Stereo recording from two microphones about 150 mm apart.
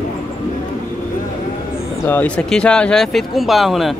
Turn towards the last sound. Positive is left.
turn(degrees=0)  # may be behind; listen again after turning